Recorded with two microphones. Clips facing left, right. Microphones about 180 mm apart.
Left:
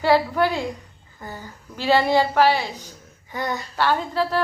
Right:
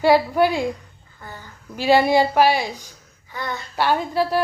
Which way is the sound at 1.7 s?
15° right (ahead or behind).